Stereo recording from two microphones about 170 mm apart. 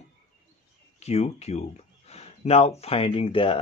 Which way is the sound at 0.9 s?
40° left (ahead or behind).